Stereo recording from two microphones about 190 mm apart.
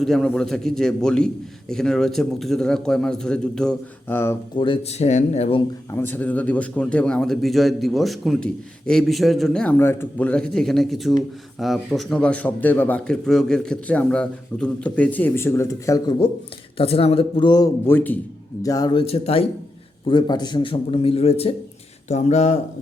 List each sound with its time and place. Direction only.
0.0 s a man's voice: centre (ahead or behind)
4.5 s speech: 25° left (ahead or behind)
5.9 s a man's voice: 10° left (ahead or behind)
16.7 s a man's voice: 30° left (ahead or behind)